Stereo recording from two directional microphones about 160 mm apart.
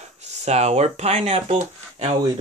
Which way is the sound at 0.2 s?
45° right (ahead or behind).